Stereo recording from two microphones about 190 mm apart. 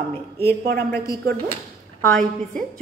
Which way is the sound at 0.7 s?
55° right (ahead or behind).